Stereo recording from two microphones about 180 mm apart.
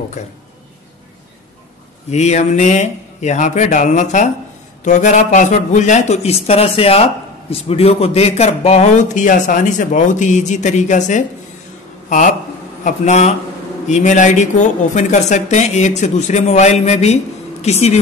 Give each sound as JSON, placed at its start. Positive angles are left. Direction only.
{"t": 0.2, "sound": "speech", "side_deg": 40}
{"t": 2.0, "sound": "a man's voice", "side_deg": 40}